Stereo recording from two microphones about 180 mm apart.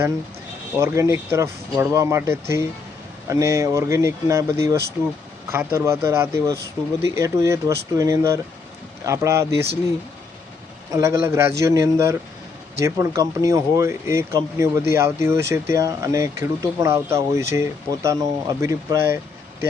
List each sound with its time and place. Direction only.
0.8 s speech: 15° right (ahead or behind)
10.9 s speech: 15° right (ahead or behind)